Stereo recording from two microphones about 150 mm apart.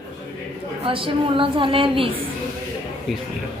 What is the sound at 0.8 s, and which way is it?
A woman's voice, 35° right (ahead or behind).